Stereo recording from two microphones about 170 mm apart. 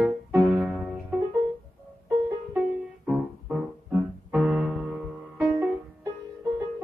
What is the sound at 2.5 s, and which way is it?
Music, 5° right (ahead or behind).